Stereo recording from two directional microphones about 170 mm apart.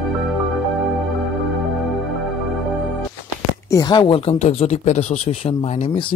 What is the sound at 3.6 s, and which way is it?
Speech, 20° left (ahead or behind).